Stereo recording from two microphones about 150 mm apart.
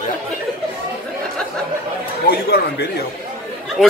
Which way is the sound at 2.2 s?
90° left.